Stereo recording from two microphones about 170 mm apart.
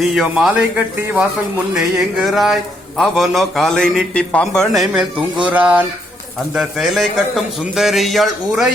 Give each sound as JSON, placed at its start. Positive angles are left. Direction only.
{"t": 0.0, "sound": "a man's voice", "side_deg": -5}